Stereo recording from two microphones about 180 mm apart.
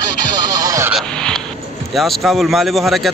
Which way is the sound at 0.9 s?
Centre (ahead or behind).